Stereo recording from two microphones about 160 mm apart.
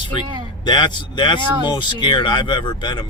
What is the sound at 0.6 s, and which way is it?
Speech, 30° left (ahead or behind).